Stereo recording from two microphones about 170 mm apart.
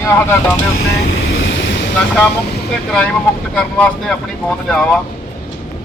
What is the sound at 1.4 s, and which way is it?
Waves, 90° left.